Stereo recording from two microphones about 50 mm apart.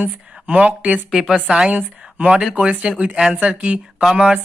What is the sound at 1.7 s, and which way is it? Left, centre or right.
Speech, right.